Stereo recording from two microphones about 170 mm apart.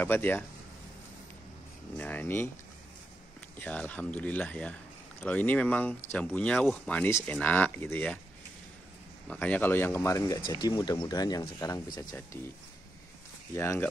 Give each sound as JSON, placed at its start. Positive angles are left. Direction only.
{"t": 0.0, "sound": "speech", "side_deg": 10}
{"t": 2.0, "sound": "speech", "side_deg": 10}
{"t": 3.5, "sound": "speech", "side_deg": 10}
{"t": 9.3, "sound": "speech", "side_deg": 10}
{"t": 13.6, "sound": "speech", "side_deg": 15}